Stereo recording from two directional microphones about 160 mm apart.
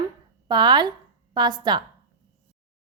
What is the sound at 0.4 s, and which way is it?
A woman's voice, 30° right (ahead or behind).